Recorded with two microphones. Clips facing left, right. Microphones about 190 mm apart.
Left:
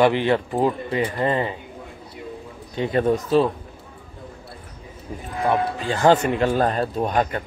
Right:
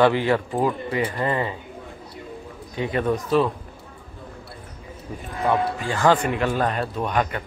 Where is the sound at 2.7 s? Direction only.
30° left (ahead or behind).